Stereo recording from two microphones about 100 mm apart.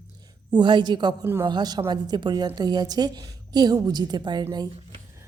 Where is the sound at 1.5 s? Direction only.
45° right (ahead or behind).